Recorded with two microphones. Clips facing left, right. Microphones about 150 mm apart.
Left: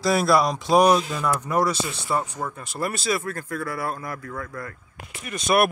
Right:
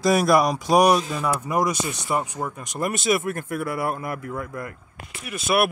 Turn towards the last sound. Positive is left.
turn(degrees=-5)  # may be behind; listen again after turning